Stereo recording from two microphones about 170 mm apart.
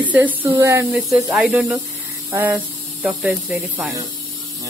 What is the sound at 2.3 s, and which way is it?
Speech, 15° right (ahead or behind).